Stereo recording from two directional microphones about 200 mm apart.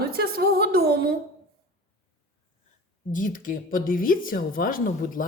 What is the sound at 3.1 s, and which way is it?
A woman's voice, 45° left (ahead or behind).